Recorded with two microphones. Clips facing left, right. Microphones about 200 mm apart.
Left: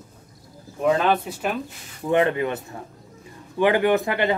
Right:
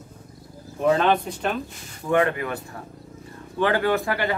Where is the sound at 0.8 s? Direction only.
5° left (ahead or behind).